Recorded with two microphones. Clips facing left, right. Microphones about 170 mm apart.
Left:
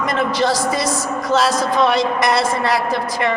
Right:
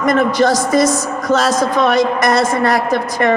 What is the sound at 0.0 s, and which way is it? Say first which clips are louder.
A woman's voice: right 5 dB; 45° right (ahead or behind).